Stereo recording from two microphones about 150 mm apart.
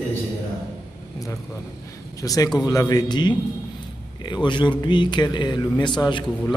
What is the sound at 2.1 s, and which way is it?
Speech, 25° left (ahead or behind).